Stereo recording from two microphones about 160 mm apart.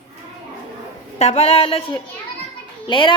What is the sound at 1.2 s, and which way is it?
A woman's voice, 45° left (ahead or behind).